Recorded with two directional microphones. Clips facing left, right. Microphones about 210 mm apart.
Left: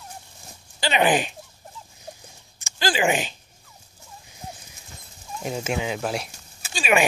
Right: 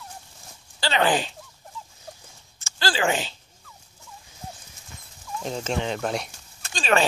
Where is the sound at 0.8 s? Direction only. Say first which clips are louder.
Left 2 dB; 15° left (ahead or behind).